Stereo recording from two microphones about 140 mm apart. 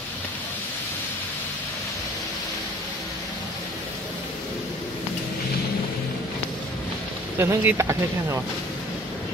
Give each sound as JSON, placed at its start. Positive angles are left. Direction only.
{"t": 7.3, "sound": "speech", "side_deg": -20}